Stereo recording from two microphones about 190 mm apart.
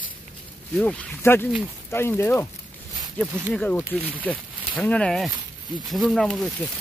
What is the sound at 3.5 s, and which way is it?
Speech, 10° left (ahead or behind).